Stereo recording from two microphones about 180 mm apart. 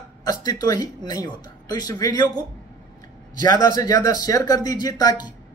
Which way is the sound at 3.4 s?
20° left (ahead or behind).